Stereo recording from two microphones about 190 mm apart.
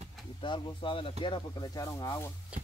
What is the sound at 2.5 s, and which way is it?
Speech, 5° right (ahead or behind).